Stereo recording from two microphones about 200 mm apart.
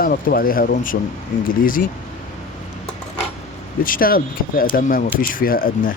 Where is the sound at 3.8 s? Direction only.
45° left (ahead or behind).